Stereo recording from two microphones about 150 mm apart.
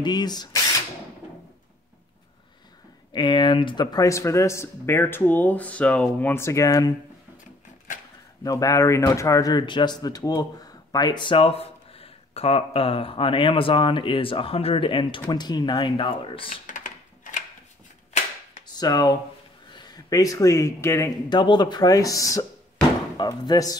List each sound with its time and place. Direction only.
0.0 s speech: 30° left (ahead or behind)
3.1 s speech: 30° left (ahead or behind)
8.5 s speech: 25° left (ahead or behind)
16.4 s a sound: 65° left (ahead or behind)
18.8 s speech: 25° left (ahead or behind)
21.3 s speech: 30° left (ahead or behind)